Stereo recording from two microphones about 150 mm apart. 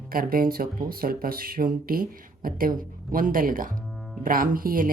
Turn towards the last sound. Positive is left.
turn(degrees=-70)  # may be behind; listen again after turning